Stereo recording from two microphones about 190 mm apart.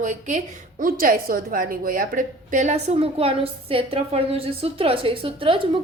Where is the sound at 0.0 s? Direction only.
40° right (ahead or behind).